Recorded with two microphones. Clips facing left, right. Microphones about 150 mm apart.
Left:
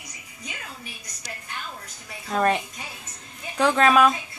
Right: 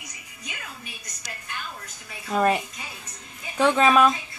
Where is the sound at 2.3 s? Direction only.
5° right (ahead or behind).